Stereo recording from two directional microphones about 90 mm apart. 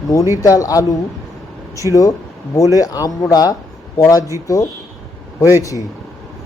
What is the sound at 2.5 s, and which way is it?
Speech, 40° left (ahead or behind).